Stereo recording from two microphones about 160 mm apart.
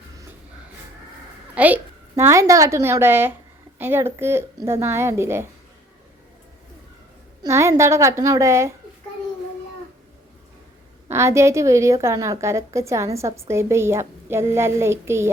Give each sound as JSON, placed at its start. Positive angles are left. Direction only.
{"t": 1.5, "sound": "a woman's voice", "side_deg": -10}
{"t": 7.4, "sound": "a woman's voice", "side_deg": -20}
{"t": 11.1, "sound": "a woman's voice", "side_deg": -15}